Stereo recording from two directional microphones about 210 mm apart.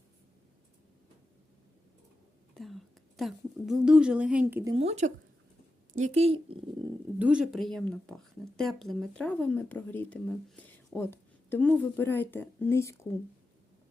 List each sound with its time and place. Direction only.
2.6 s a woman's voice: centre (ahead or behind)
4.6 s a woman's voice: 25° right (ahead or behind)
7.2 s a woman's voice: 5° right (ahead or behind); by 13.0 s 10° left (ahead or behind)